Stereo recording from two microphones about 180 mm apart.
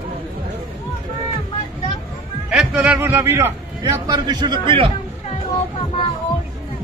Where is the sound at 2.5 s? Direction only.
5° right (ahead or behind); by 4.9 s 30° right (ahead or behind).